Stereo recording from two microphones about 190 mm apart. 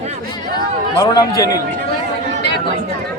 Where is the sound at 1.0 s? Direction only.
20° left (ahead or behind).